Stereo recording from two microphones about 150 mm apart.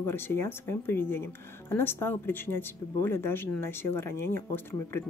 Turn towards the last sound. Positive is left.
turn(degrees=15)  # may be behind; listen again after turning